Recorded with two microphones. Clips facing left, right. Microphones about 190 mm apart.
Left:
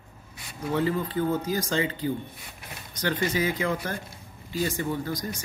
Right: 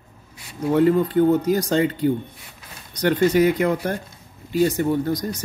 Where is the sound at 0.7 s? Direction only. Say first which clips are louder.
Right 9 dB; 55° right (ahead or behind).